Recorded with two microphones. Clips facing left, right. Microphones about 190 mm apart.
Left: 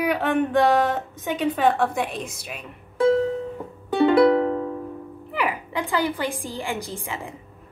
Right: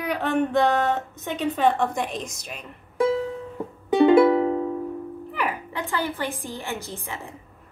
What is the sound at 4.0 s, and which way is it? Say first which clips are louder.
Music: right 1 dB; 15° right (ahead or behind).